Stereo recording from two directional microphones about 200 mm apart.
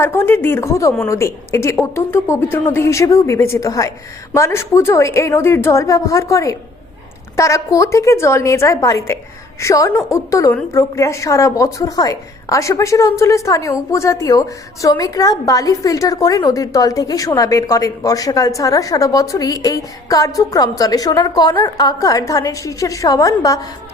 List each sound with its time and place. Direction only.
0.0 s a woman's voice: 10° left (ahead or behind)